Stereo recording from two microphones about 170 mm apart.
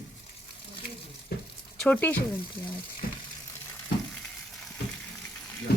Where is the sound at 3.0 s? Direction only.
60° left (ahead or behind).